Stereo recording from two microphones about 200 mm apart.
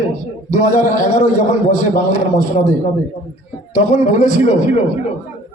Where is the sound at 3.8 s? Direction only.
35° left (ahead or behind).